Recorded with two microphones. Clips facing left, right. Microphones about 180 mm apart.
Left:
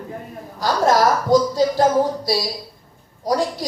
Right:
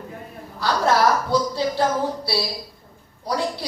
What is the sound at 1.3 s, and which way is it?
Speech, 45° left (ahead or behind).